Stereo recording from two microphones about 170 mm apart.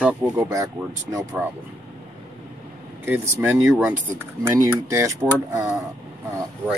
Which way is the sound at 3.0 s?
10° right (ahead or behind).